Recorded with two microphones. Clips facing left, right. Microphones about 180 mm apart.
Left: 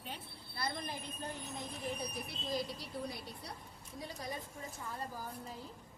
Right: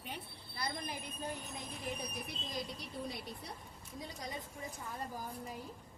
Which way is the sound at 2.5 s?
20° right (ahead or behind).